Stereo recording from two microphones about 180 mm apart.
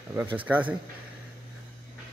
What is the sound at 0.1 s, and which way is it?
Speech, 10° right (ahead or behind).